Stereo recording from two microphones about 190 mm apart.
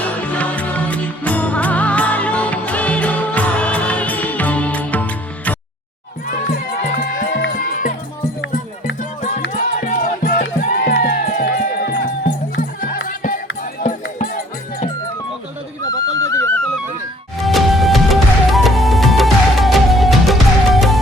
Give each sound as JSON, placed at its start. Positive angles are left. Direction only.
{"t": 0.0, "sound": "music", "side_deg": 5}
{"t": 6.2, "sound": "music", "side_deg": 50}
{"t": 7.3, "sound": "music", "side_deg": 80}
{"t": 7.5, "sound": "music", "side_deg": 45}
{"t": 9.0, "sound": "music", "side_deg": 40}
{"t": 13.1, "sound": "music", "side_deg": 50}
{"t": 15.8, "sound": "music", "side_deg": 20}
{"t": 17.4, "sound": "music", "side_deg": 0}